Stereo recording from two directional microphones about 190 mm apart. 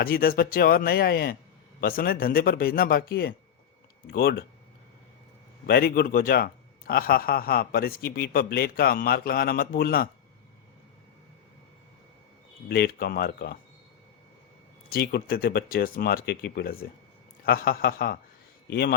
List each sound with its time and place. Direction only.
0.0 s a man's voice: 50° left (ahead or behind)
5.6 s a man's voice: 55° left (ahead or behind)
12.6 s a man's voice: 55° left (ahead or behind)
14.8 s a man's voice: 55° left (ahead or behind)